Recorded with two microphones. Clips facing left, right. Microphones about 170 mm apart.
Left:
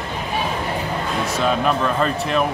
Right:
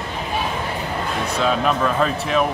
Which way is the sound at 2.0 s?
Centre (ahead or behind).